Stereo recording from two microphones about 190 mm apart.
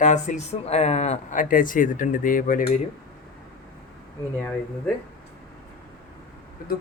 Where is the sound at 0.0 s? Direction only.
40° left (ahead or behind).